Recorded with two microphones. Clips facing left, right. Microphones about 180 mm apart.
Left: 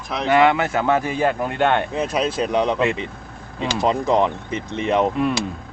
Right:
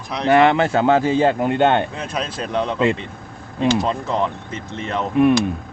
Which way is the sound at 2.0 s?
10° left (ahead or behind).